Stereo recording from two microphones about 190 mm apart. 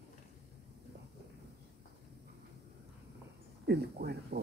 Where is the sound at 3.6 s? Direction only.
60° right (ahead or behind).